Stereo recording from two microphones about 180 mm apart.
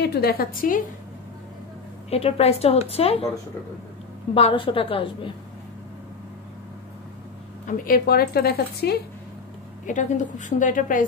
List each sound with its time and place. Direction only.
0.0 s speech: 60° left (ahead or behind)
2.0 s a woman's voice: 35° left (ahead or behind)
4.3 s a woman's voice: 30° left (ahead or behind)
7.6 s speech: 50° left (ahead or behind)
9.8 s a woman's voice: 45° left (ahead or behind)